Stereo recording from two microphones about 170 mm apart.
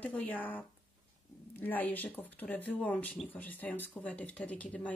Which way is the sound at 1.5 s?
10° left (ahead or behind).